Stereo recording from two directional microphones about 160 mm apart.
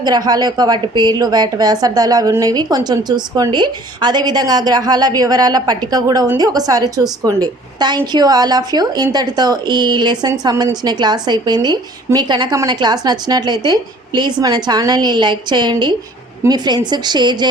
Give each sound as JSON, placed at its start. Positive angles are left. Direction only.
{"t": 0.0, "sound": "a woman's voice", "side_deg": -25}